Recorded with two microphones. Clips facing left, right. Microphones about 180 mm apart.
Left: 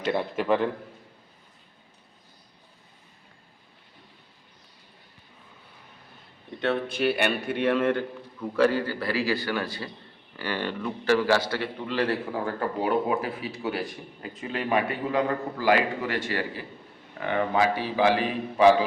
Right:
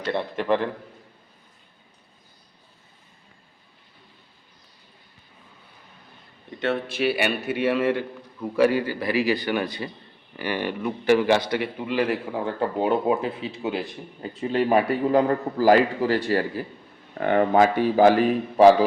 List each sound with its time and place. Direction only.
0.1 s a man's voice: 5° left (ahead or behind)
6.5 s a man's voice: centre (ahead or behind); by 13.8 s 20° right (ahead or behind)
14.2 s a man's voice: 35° right (ahead or behind)